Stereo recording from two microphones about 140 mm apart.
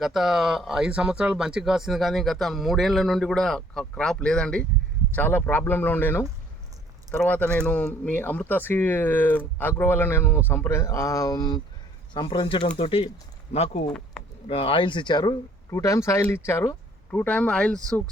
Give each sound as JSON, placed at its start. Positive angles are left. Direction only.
{"t": 0.0, "sound": "speech", "side_deg": 0}
{"t": 7.3, "sound": "speech", "side_deg": 10}
{"t": 17.2, "sound": "speech", "side_deg": 10}